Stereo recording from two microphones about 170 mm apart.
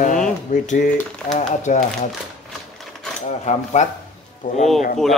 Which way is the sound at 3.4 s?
45° left (ahead or behind).